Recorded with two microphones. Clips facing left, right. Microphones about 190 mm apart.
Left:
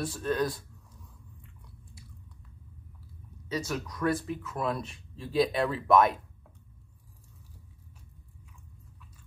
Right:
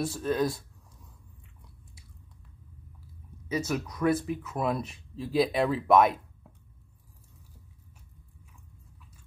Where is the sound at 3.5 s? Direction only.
20° right (ahead or behind).